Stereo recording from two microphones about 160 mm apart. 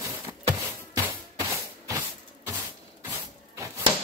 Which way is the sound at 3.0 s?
15° right (ahead or behind).